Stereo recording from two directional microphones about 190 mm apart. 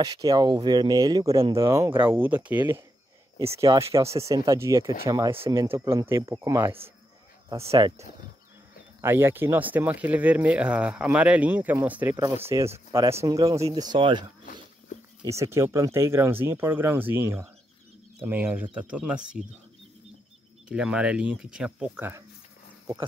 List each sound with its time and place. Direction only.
0.0 s speech: 20° right (ahead or behind)
9.0 s speech: 10° right (ahead or behind)
15.2 s speech: 15° right (ahead or behind)
20.6 s speech: 5° right (ahead or behind)